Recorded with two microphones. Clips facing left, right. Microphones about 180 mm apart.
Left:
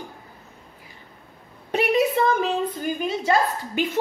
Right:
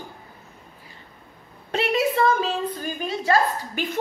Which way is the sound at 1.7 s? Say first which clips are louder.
Left 2 dB; 15° left (ahead or behind).